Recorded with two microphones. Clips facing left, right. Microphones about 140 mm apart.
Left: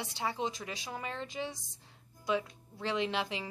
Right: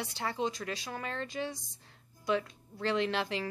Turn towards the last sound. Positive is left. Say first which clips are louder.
# right 2 dB
turn(degrees=15)  # may be behind; listen again after turning